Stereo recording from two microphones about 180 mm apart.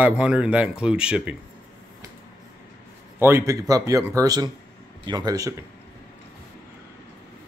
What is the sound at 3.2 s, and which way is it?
Speech, 15° right (ahead or behind).